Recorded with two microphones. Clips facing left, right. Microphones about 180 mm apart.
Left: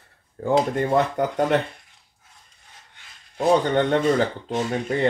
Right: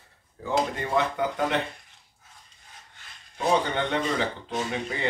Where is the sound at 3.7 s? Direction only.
45° left (ahead or behind).